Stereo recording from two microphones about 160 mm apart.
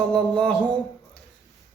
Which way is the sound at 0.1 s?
5° left (ahead or behind).